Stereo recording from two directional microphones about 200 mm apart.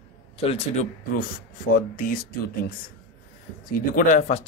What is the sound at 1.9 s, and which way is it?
Speech, 45° left (ahead or behind).